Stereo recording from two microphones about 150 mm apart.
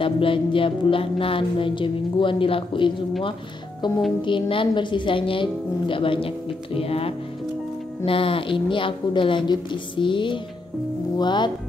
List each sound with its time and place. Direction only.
0.0 s a woman's voice: 35° left (ahead or behind)